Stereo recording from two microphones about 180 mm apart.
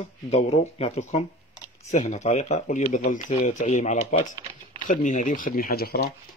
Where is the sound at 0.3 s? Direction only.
35° left (ahead or behind); by 6.0 s 60° left (ahead or behind).